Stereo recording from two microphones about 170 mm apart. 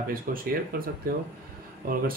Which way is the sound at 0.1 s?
55° right (ahead or behind).